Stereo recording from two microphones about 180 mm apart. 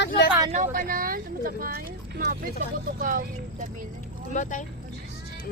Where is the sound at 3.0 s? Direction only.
50° right (ahead or behind).